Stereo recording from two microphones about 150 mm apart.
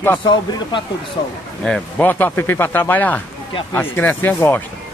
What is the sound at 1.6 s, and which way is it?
Speech, 10° left (ahead or behind).